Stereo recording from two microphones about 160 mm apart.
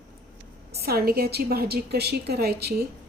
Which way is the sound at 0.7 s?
80° right.